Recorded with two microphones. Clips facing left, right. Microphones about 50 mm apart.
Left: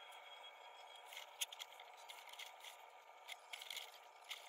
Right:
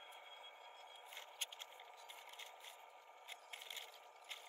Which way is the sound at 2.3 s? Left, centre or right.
Left.